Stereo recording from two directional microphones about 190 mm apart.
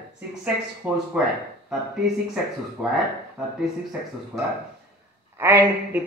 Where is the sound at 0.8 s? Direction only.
5° right (ahead or behind).